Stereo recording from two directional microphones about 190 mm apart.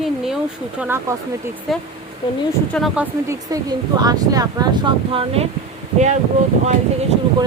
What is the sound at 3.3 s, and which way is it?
Speech, 20° right (ahead or behind).